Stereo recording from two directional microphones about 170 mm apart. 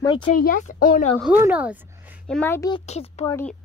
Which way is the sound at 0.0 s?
25° left (ahead or behind).